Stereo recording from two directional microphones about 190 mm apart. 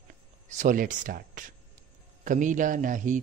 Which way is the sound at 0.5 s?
45° right (ahead or behind).